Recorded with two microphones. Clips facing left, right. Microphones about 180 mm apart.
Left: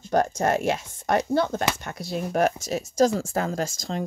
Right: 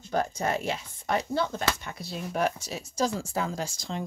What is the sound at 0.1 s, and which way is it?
Speech, 70° left (ahead or behind).